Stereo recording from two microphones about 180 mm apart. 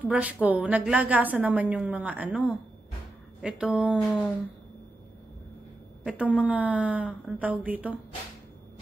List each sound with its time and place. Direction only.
0.1 s a woman's voice: 5° right (ahead or behind)
6.0 s a woman's voice: 5° right (ahead or behind)